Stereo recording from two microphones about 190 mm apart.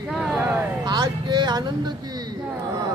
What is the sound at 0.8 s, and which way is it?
Speech, 20° right (ahead or behind).